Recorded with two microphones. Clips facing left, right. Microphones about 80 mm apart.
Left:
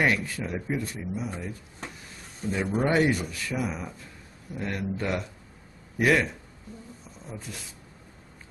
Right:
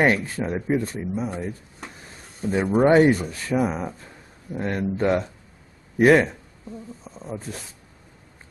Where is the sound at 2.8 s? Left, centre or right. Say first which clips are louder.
Right 8 dB; right.